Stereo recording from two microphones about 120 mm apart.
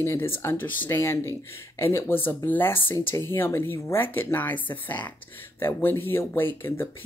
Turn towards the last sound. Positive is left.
turn(degrees=20)  # may be behind; listen again after turning